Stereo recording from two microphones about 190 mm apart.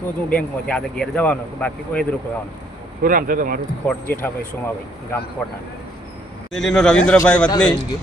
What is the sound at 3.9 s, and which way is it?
Speech, 10° left (ahead or behind).